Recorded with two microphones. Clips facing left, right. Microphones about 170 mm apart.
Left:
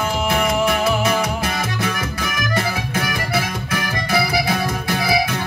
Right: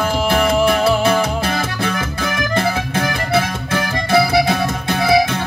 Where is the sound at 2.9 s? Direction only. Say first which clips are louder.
Right 4 dB; 30° right (ahead or behind).